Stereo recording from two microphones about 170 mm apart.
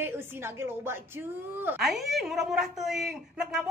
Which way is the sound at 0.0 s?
15° right (ahead or behind).